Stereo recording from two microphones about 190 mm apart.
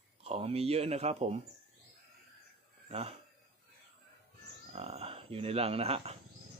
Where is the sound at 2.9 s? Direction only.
30° right (ahead or behind).